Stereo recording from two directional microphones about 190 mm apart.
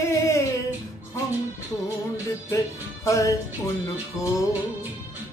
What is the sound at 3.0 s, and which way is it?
Speech, 15° left (ahead or behind).